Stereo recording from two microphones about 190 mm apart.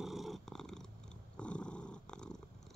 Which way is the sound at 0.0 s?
Centre (ahead or behind).